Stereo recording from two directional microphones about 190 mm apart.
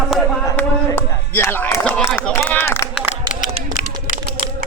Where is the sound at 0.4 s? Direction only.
15° left (ahead or behind).